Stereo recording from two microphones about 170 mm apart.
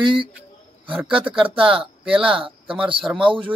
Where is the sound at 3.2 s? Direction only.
30° right (ahead or behind).